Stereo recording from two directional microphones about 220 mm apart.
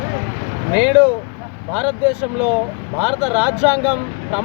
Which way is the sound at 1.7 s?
5° right (ahead or behind).